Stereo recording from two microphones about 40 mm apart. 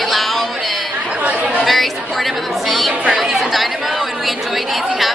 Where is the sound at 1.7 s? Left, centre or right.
Centre.